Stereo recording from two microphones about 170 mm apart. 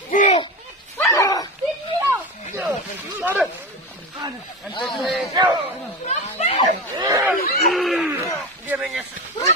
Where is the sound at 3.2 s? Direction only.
10° right (ahead or behind).